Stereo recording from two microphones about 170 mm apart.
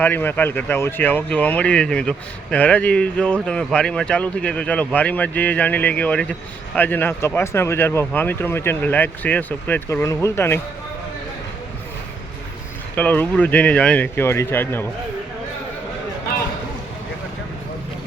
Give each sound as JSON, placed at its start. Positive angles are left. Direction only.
{"t": 0.0, "sound": "speech", "side_deg": 10}
{"t": 13.0, "sound": "speech", "side_deg": 10}